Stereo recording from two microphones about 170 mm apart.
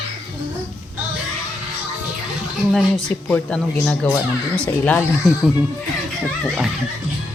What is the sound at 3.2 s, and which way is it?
A man's voice, 5° left (ahead or behind).